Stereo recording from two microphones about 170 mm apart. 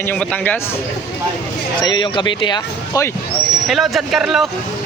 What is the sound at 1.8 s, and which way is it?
Speech, 25° left (ahead or behind).